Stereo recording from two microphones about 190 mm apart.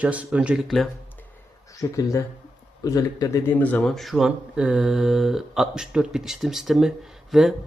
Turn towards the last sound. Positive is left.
turn(degrees=0)  # may be behind; listen again after turning